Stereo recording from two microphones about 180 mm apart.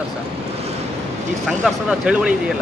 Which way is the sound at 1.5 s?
Centre (ahead or behind).